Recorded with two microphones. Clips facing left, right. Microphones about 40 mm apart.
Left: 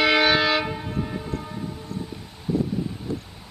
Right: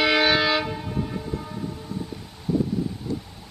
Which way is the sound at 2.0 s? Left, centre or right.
Centre.